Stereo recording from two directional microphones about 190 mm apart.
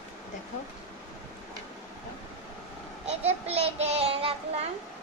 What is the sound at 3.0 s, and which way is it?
Child singing, 35° right (ahead or behind).